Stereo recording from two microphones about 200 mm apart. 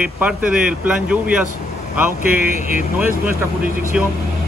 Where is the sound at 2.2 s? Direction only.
45° right (ahead or behind).